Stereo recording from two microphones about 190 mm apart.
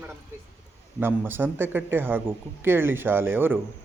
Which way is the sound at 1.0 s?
10° right (ahead or behind).